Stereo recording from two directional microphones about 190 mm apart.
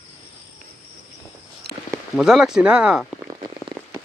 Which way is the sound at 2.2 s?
Centre (ahead or behind).